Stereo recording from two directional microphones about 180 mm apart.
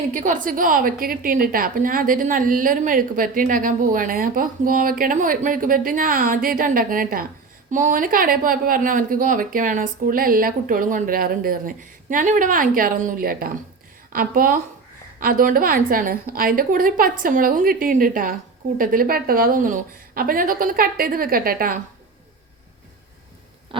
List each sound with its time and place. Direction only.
0.1 s a woman's voice: 45° right (ahead or behind)